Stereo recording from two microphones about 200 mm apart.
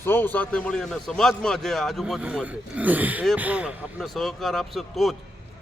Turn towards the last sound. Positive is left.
turn(degrees=0)  # may be behind; listen again after turning